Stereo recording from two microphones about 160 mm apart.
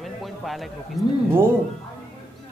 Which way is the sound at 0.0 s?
Centre (ahead or behind).